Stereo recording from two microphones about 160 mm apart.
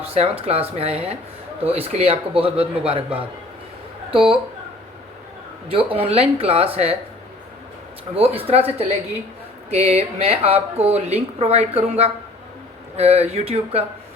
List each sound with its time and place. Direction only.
0.0 s speech: 40° right (ahead or behind)
4.1 s speech: 35° right (ahead or behind)
5.7 s speech: 35° right (ahead or behind)
8.1 s speech: 35° right (ahead or behind)